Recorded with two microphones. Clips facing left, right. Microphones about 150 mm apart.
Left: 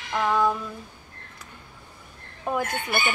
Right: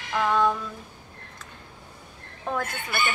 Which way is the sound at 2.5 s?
10° left (ahead or behind).